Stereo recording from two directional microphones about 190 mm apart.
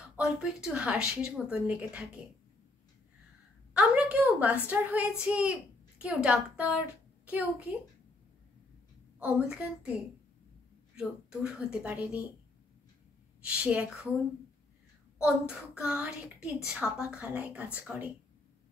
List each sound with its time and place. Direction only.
0.1 s speech: 5° right (ahead or behind)
3.7 s a sound: 5° right (ahead or behind)
4.6 s a woman's voice: 10° right (ahead or behind)
9.2 s a woman's voice: 5° right (ahead or behind)
11.0 s speech: 5° right (ahead or behind)
13.4 s speech: 5° right (ahead or behind)
15.1 s a woman's voice: 5° right (ahead or behind)